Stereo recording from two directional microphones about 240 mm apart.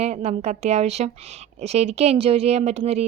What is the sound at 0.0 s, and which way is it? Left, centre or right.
Speech, right.